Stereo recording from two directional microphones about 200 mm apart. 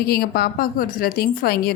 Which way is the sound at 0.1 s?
50° left (ahead or behind).